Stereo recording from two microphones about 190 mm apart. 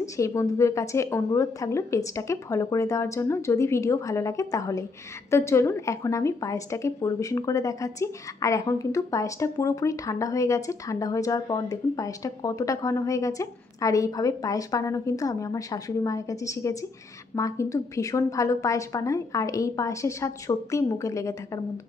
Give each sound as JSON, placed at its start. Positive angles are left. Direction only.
{"t": 0.0, "sound": "a woman's voice", "side_deg": 15}